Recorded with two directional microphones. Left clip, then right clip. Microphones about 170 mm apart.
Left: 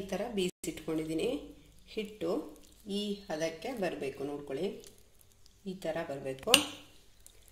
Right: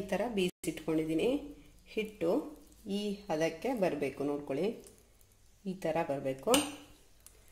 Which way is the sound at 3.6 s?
35° right (ahead or behind).